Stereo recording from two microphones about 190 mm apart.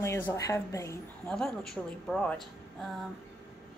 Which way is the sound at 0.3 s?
15° left (ahead or behind).